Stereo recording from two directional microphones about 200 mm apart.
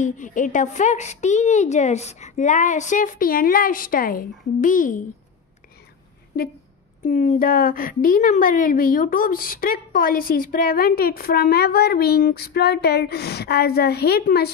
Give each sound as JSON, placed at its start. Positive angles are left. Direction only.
{"t": 0.0, "sound": "a woman's voice", "side_deg": 40}
{"t": 7.1, "sound": "a woman's voice", "side_deg": 40}